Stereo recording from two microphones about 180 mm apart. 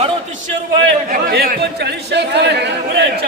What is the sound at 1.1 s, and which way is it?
Speech, 55° right (ahead or behind).